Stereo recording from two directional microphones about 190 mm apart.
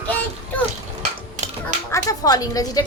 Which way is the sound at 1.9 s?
20° left (ahead or behind).